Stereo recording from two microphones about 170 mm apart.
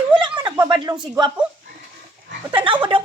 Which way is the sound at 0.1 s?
25° right (ahead or behind).